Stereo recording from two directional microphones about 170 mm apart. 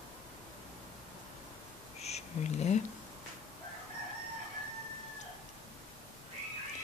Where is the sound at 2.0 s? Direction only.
40° left (ahead or behind).